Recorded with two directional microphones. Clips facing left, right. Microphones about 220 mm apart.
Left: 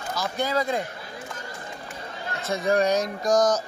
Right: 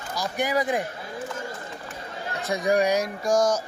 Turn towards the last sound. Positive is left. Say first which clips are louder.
# left 1 dB
turn(degrees=-10)  # may be behind; listen again after turning